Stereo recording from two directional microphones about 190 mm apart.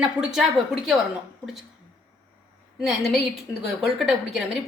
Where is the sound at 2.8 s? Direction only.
Centre (ahead or behind).